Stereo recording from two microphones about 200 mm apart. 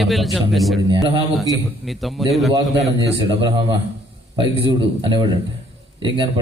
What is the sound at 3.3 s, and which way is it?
A man's voice, 25° right (ahead or behind).